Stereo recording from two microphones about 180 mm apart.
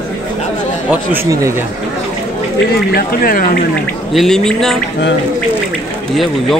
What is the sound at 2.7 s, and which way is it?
Speech, 55° left (ahead or behind).